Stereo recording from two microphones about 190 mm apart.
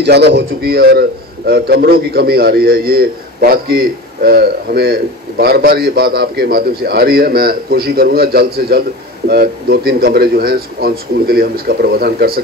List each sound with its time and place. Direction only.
0.0 s a man's voice: 60° right (ahead or behind)